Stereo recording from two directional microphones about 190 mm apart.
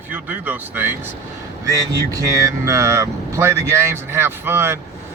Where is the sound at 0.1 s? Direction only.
10° right (ahead or behind).